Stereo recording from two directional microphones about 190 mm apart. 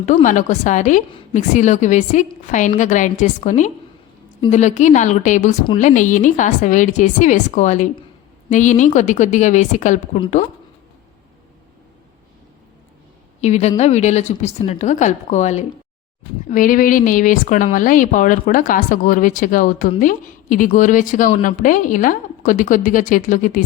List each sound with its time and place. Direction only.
0.0 s a woman's voice: 40° left (ahead or behind)
13.4 s a woman's voice: 35° left (ahead or behind)